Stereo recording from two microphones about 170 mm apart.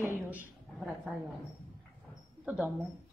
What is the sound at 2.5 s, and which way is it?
Speech, 5° right (ahead or behind).